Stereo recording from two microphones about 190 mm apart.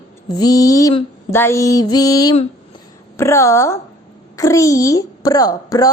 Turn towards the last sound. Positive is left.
turn(degrees=20)  # may be behind; listen again after turning